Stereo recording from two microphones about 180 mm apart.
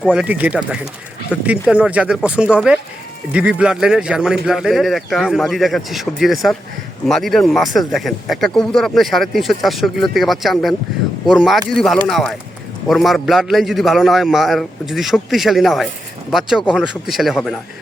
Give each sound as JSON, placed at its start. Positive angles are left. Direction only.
{"t": 0.0, "sound": "speech", "side_deg": -5}